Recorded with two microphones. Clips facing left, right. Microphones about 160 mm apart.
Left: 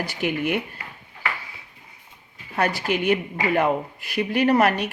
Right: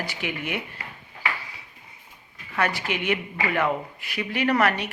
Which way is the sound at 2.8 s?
45° left (ahead or behind).